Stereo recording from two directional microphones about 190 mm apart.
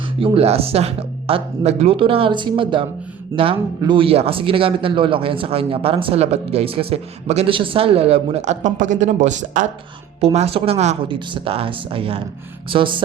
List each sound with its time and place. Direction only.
0.2 s speech: 30° right (ahead or behind)